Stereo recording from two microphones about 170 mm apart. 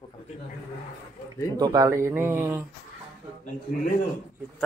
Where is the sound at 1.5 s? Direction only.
20° right (ahead or behind).